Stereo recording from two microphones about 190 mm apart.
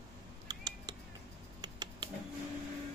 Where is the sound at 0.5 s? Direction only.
20° right (ahead or behind).